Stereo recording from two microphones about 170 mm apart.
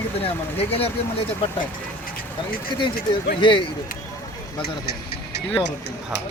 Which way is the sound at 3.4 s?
30° left (ahead or behind).